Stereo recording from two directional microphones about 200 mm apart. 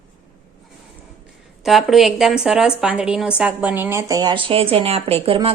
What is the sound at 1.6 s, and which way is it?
A woman's voice, centre (ahead or behind).